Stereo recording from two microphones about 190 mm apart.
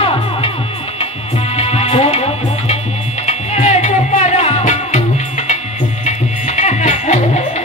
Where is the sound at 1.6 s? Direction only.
30° left (ahead or behind).